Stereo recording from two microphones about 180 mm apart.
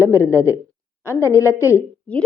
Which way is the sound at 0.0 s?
15° left (ahead or behind).